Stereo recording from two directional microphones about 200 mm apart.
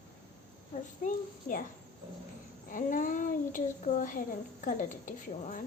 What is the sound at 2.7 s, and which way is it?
A woman's voice, 40° left (ahead or behind).